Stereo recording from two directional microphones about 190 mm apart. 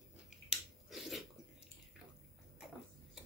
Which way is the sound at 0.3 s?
Centre (ahead or behind).